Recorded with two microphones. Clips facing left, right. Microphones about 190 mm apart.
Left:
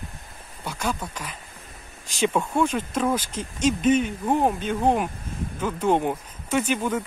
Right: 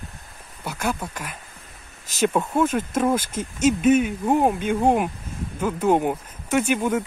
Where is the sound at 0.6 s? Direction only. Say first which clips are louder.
Right 2 dB; 10° right (ahead or behind).